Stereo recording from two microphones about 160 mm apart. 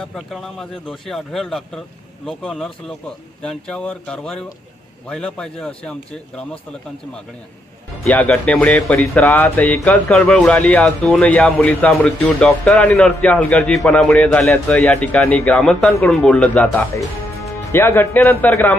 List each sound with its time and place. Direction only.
0.0 s speech: 5° left (ahead or behind)
8.0 s speech: 5° left (ahead or behind)